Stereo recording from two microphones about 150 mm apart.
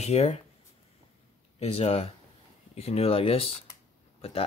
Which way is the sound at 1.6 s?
45° left (ahead or behind).